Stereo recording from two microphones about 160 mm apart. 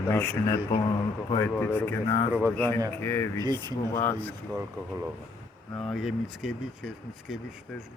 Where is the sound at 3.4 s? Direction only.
25° right (ahead or behind).